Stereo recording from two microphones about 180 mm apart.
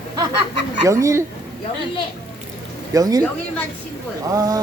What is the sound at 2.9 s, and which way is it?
Speech, 20° right (ahead or behind).